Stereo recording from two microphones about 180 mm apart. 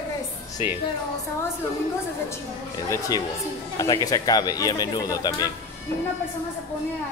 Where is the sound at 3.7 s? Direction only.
20° left (ahead or behind).